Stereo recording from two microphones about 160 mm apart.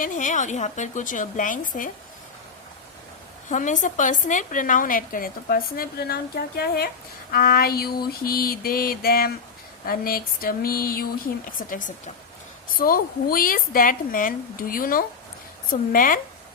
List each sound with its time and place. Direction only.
0.0 s a woman's voice: 55° left (ahead or behind)
3.5 s a woman's voice: 50° left (ahead or behind); by 6.9 s 75° left (ahead or behind)
7.3 s mantra: 65° left (ahead or behind)
11.7 s a woman's voice: 55° left (ahead or behind)